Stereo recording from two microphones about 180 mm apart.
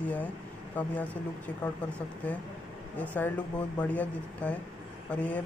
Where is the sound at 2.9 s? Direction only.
10° left (ahead or behind).